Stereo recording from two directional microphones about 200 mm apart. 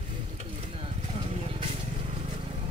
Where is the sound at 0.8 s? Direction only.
30° right (ahead or behind).